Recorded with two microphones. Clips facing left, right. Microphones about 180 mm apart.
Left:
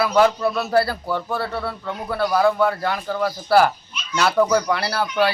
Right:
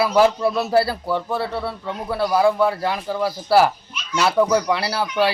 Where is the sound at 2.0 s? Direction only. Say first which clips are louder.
Right 1 dB; 5° right (ahead or behind).